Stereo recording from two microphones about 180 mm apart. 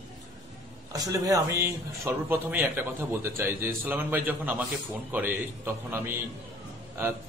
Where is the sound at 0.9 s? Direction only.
20° right (ahead or behind).